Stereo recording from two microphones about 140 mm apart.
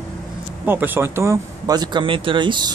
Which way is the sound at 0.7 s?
15° right (ahead or behind).